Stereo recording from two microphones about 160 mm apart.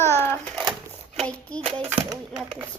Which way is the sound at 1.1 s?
10° left (ahead or behind).